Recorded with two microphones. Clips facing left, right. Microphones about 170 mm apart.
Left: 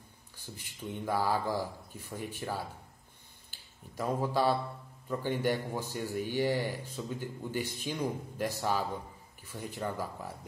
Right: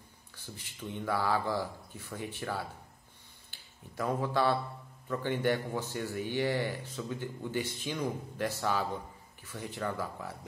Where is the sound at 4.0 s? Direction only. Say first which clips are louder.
Even; 10° left (ahead or behind).